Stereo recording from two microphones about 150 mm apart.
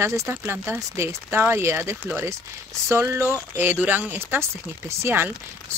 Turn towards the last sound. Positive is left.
turn(degrees=-15)  # may be behind; listen again after turning